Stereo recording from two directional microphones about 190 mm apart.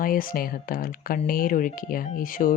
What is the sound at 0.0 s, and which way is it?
Speech, 50° left (ahead or behind).